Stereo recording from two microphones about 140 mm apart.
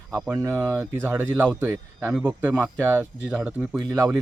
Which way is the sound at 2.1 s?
5° right (ahead or behind).